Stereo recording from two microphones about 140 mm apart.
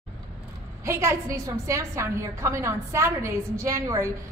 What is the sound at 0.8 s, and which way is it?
A woman's voice, 20° right (ahead or behind).